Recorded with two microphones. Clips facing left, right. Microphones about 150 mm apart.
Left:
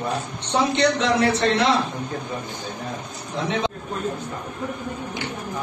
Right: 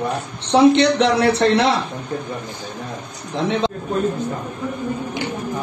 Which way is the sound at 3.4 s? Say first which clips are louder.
Right 4 dB; 70° right (ahead or behind).